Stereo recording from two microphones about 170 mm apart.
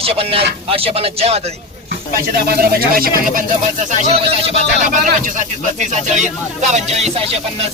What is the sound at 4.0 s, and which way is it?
Speech, 40° right (ahead or behind).